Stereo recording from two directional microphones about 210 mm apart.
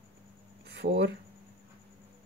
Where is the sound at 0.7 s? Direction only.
55° right (ahead or behind).